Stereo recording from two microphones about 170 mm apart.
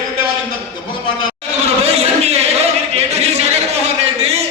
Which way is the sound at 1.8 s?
40° right (ahead or behind).